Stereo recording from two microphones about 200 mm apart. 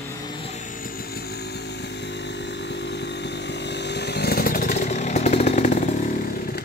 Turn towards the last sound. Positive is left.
turn(degrees=45)  # may be behind; listen again after turning